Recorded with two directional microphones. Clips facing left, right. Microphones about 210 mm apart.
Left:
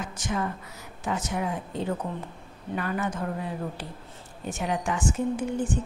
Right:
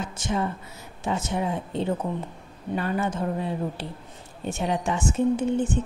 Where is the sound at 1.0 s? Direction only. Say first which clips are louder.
Right 2 dB; 25° right (ahead or behind).